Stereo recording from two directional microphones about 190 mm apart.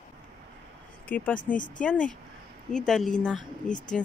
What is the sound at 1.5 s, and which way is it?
Speech, 45° left (ahead or behind).